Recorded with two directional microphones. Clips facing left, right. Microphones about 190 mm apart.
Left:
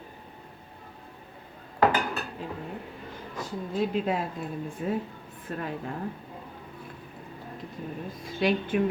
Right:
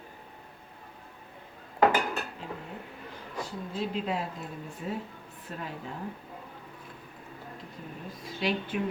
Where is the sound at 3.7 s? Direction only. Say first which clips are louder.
Left 5 dB; 50° left (ahead or behind).